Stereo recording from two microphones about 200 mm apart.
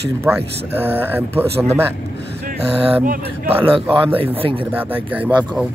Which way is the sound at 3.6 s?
25° right (ahead or behind).